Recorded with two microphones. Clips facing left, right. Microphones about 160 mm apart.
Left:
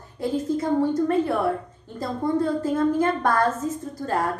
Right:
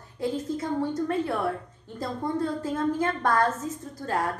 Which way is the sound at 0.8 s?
5° left (ahead or behind).